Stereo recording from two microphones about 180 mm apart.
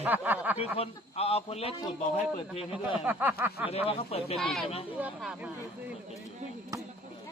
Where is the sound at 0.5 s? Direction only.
35° left (ahead or behind).